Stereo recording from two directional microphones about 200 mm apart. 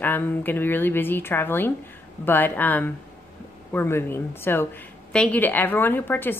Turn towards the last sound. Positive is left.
turn(degrees=10)  # may be behind; listen again after turning